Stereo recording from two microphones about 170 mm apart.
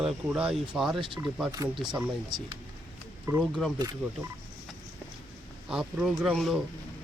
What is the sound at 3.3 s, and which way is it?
Speech, 20° right (ahead or behind).